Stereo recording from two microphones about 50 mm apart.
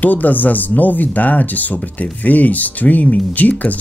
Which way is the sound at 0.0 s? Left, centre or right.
Left.